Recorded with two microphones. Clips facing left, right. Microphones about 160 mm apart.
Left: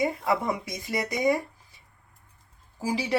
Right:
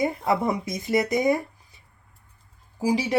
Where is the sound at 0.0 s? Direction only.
25° right (ahead or behind).